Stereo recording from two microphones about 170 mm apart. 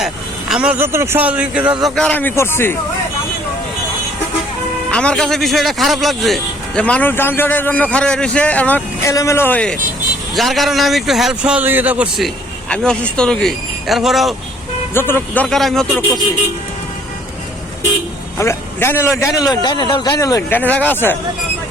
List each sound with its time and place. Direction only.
0.0 s speech: 5° right (ahead or behind)
1.8 s a man's voice: 5° left (ahead or behind)
4.9 s a man's voice: 5° left (ahead or behind)
14.9 s a man's voice: 15° left (ahead or behind)
18.3 s a man's voice: 15° left (ahead or behind)